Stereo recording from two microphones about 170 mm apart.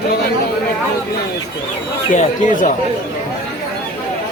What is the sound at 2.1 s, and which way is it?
Speech, 50° left (ahead or behind).